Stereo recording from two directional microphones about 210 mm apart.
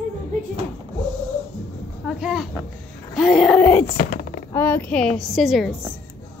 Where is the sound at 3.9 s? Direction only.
40° left (ahead or behind).